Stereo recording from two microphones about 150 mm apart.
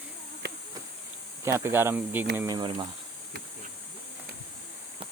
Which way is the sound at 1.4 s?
15° right (ahead or behind).